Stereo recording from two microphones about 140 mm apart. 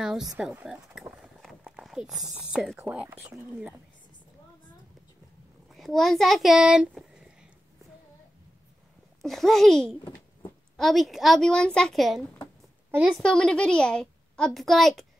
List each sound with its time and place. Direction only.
0.0 s a woman's voice: centre (ahead or behind)
0.7 s a sound: 5° right (ahead or behind)
1.8 s a woman's voice: centre (ahead or behind)
5.7 s a child's voice: centre (ahead or behind)
9.2 s a woman's voice: centre (ahead or behind)